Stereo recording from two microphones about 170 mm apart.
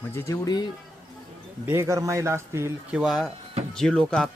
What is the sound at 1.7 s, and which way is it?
Speech, 15° right (ahead or behind).